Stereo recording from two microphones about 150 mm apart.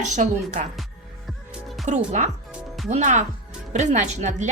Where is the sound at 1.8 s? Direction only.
55° right (ahead or behind).